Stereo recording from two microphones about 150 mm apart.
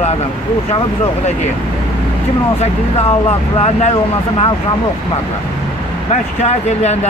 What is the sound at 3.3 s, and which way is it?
Speech, 45° left (ahead or behind).